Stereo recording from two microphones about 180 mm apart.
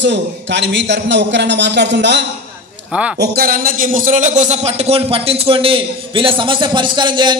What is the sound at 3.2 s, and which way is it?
A man's voice, 60° right (ahead or behind).